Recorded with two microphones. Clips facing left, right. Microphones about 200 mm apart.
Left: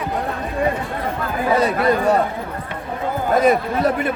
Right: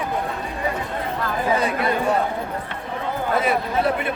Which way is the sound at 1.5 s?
40° left (ahead or behind).